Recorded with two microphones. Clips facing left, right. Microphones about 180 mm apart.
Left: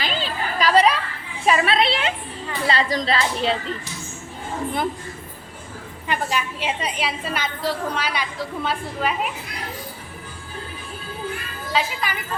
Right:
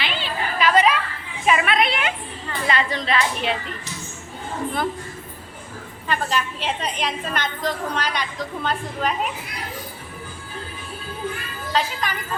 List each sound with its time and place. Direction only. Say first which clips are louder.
0.0 s chatter: left 1 dB; 40° left (ahead or behind)
1.5 s a sound: left 1 dB; 35° left (ahead or behind)
2.6 s music: left 2 dB; 35° left (ahead or behind)
6.1 s a woman's voice: right 1 dB; 10° left (ahead or behind)
11.7 s a woman's voice: even; 10° left (ahead or behind)